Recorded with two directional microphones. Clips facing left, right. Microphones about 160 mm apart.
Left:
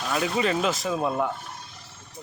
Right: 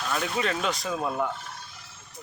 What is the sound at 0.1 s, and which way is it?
Speech, 5° left (ahead or behind).